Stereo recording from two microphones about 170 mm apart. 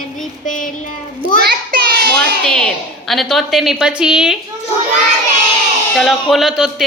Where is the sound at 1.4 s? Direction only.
70° right (ahead or behind).